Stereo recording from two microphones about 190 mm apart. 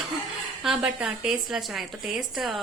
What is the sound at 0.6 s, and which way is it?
A woman's voice, 5° right (ahead or behind).